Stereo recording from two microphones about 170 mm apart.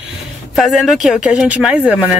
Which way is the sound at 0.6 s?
Centre (ahead or behind).